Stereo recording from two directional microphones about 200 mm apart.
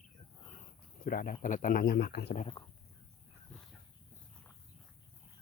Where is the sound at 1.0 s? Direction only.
45° left (ahead or behind).